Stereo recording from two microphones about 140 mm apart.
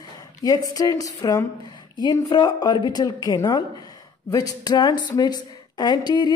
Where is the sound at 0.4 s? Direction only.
25° left (ahead or behind).